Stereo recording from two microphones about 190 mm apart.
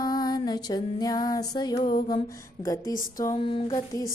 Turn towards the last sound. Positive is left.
turn(degrees=20)  # may be behind; listen again after turning